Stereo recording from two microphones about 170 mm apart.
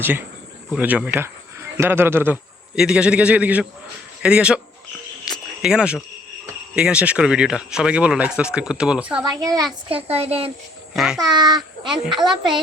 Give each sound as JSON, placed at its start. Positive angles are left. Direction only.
{"t": 0.0, "sound": "a man's voice", "side_deg": -10}
{"t": 5.2, "sound": "a sound", "side_deg": -5}
{"t": 6.7, "sound": "speech", "side_deg": -5}
{"t": 9.4, "sound": "a child's voice", "side_deg": -20}
{"t": 9.9, "sound": "speech", "side_deg": -35}
{"t": 10.9, "sound": "speech", "side_deg": -5}
{"t": 11.2, "sound": "a child's voice", "side_deg": -25}